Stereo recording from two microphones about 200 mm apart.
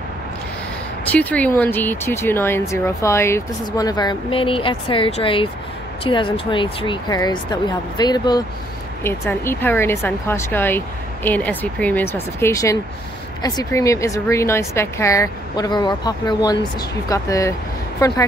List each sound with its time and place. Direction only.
1.0 s speech: 5° left (ahead or behind)